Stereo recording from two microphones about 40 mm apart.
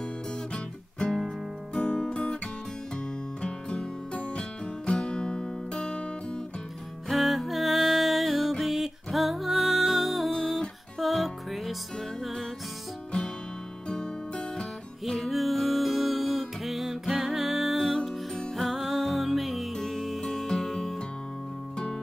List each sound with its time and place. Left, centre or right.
1.1 s music: centre
1.8 s music: left
3.4 s music: left
7.1 s music: centre
13.8 s music: centre
15.0 s music: centre